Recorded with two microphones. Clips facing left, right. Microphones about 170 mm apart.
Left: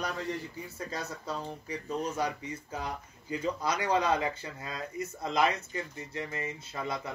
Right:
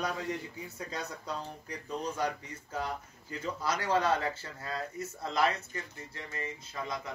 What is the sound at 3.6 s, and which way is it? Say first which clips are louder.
Speech: right 1 dB; 15° left (ahead or behind).